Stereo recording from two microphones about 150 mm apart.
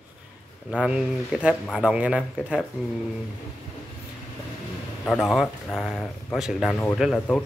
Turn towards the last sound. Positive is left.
turn(degrees=5)  # may be behind; listen again after turning